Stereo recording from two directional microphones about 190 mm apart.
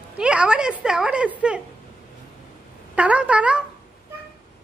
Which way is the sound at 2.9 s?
5° right (ahead or behind).